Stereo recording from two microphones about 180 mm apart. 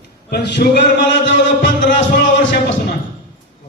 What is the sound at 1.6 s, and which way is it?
Music, 45° left (ahead or behind).